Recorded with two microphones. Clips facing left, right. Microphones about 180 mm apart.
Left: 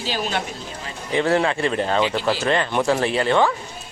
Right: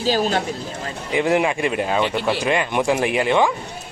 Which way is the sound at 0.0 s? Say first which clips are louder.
Right 6 dB; 40° right (ahead or behind).